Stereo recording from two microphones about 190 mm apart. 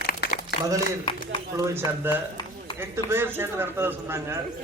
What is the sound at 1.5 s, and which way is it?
A man's voice, 15° right (ahead or behind).